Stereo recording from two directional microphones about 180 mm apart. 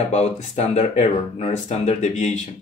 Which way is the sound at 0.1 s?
40° left (ahead or behind).